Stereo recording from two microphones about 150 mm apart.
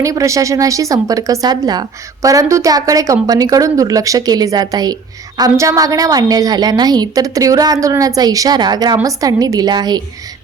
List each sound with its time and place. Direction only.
0.0 s a woman's voice: 20° right (ahead or behind)